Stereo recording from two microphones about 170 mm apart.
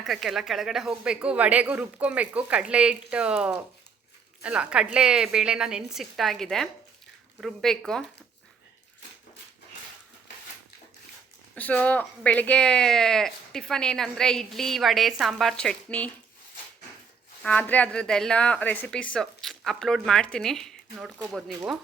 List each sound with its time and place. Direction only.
0.0 s speech: centre (ahead or behind)
11.5 s speech: 10° left (ahead or behind)
17.4 s speech: 10° left (ahead or behind)